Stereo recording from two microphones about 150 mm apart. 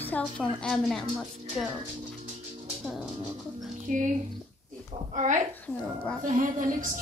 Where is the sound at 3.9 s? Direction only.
60° right (ahead or behind).